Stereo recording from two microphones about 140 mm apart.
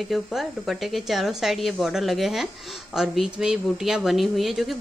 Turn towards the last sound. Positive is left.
turn(degrees=0)  # may be behind; listen again after turning